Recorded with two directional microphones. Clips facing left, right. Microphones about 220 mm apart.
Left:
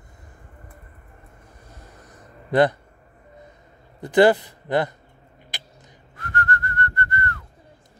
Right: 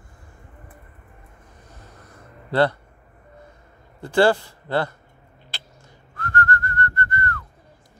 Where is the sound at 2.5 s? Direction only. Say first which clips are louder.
Left 2 dB; 15° left (ahead or behind).